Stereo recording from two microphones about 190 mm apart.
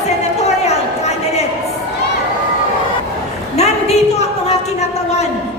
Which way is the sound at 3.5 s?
35° left (ahead or behind).